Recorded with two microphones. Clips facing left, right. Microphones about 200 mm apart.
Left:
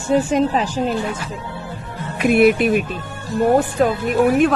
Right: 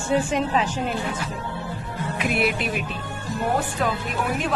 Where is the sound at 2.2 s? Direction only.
50° left (ahead or behind).